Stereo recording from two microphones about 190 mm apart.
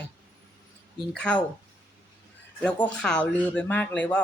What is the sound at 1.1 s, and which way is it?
Speech, 5° left (ahead or behind).